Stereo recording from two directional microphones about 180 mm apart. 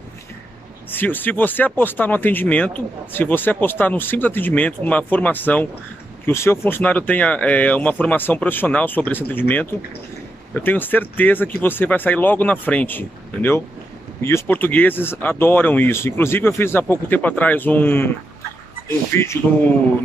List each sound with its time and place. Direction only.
0.8 s speech: 10° left (ahead or behind)
19.1 s speech: 15° left (ahead or behind)